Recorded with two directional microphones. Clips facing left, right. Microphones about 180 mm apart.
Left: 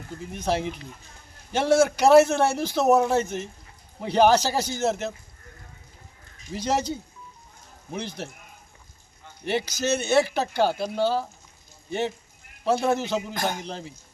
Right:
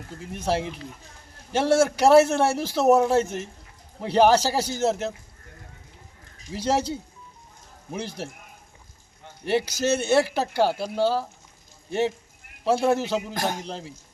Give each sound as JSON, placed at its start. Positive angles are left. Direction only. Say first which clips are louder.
{"t": 0.3, "sound": "a man's voice", "louder": "even", "side_deg": -5}
{"t": 1.5, "sound": "a man's voice", "louder": "even", "side_deg": -5}
{"t": 6.5, "sound": "a man's voice", "louder": "right 2 dB", "side_deg": -5}
{"t": 7.9, "sound": "a man's voice", "louder": "right 1 dB", "side_deg": -5}
{"t": 9.4, "sound": "a man's voice", "louder": "right 3 dB", "side_deg": -5}
{"t": 13.3, "sound": "a man's voice", "louder": "right 1 dB", "side_deg": -35}
{"t": 13.7, "sound": "speech", "louder": "even", "side_deg": -5}